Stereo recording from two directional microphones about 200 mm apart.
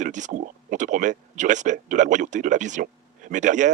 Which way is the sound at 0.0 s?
40° right (ahead or behind).